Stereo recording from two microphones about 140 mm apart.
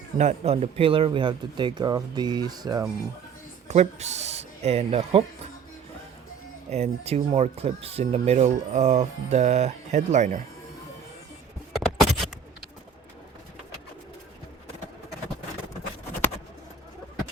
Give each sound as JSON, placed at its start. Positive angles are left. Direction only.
{"t": 0.2, "sound": "speech", "side_deg": -55}
{"t": 3.7, "sound": "speech", "side_deg": -55}
{"t": 6.7, "sound": "speech", "side_deg": -50}
{"t": 11.7, "sound": "a sound", "side_deg": 0}